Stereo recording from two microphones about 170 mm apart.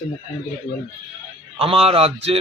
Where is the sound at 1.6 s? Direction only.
35° right (ahead or behind).